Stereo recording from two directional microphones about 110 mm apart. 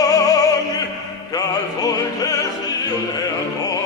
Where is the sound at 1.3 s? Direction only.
35° left (ahead or behind).